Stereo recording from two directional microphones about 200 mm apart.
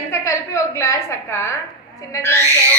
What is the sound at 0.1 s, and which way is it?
A woman's voice, 15° left (ahead or behind).